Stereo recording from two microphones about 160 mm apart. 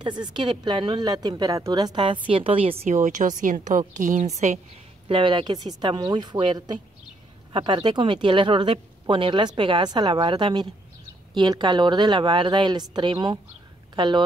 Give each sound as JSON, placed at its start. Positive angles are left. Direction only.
{"t": 0.0, "sound": "speech", "side_deg": -30}
{"t": 5.0, "sound": "speech", "side_deg": -30}